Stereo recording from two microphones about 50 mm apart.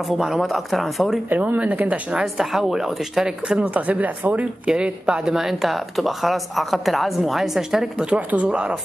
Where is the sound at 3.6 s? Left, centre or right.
Right; by 8.1 s centre.